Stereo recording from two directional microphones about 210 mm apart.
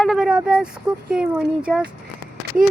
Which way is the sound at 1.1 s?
5° right (ahead or behind).